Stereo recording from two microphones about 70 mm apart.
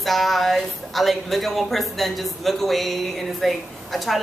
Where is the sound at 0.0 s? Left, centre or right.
Centre.